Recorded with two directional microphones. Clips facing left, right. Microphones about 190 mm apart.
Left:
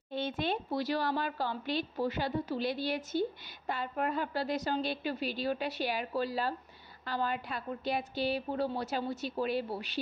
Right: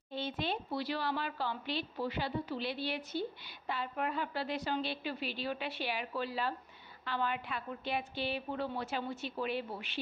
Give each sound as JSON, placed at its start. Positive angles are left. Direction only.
{"t": 0.1, "sound": "a woman's voice", "side_deg": 50}